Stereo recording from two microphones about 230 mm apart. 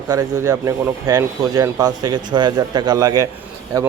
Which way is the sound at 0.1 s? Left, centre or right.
Centre.